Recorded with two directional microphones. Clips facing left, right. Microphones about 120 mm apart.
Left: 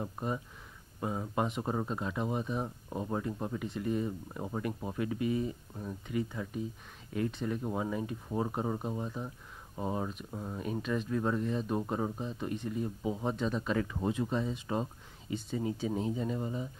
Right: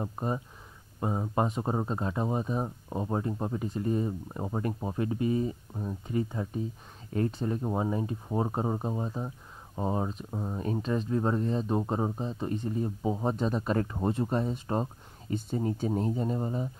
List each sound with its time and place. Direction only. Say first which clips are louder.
0.0 s speech: right 3 dB; 30° right (ahead or behind)